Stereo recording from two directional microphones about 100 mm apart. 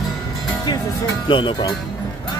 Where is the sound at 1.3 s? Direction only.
55° left (ahead or behind).